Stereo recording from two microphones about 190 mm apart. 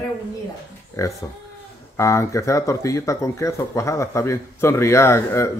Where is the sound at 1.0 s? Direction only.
15° left (ahead or behind).